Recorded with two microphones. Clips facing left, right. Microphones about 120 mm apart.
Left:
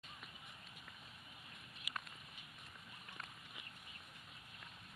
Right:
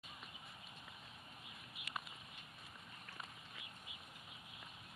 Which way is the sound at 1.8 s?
10° right (ahead or behind).